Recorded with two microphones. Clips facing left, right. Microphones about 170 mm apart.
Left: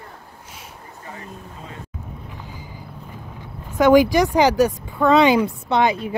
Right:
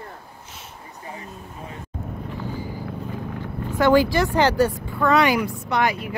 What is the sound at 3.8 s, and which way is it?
A woman's voice, 15° left (ahead or behind).